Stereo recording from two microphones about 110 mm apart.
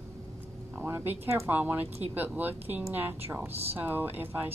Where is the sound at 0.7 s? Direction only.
20° right (ahead or behind).